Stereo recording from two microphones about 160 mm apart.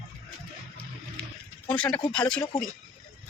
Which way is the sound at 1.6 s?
5° left (ahead or behind).